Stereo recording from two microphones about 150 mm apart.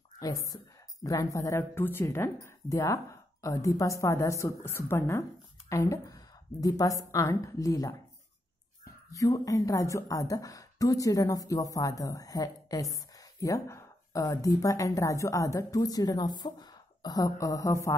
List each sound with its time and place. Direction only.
0.2 s a woman's voice: 25° left (ahead or behind)
9.1 s a woman's voice: 20° left (ahead or behind)